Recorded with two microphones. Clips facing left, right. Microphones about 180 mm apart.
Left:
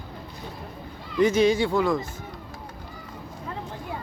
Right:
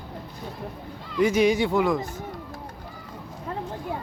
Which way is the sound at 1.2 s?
10° right (ahead or behind).